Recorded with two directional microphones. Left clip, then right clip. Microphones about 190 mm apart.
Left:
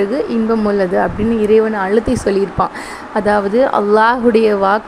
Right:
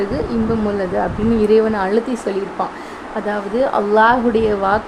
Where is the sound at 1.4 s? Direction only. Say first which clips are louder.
Left 2 dB; 5° left (ahead or behind).